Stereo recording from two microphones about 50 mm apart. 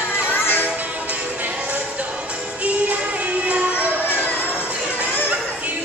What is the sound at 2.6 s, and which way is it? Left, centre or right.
Music, right.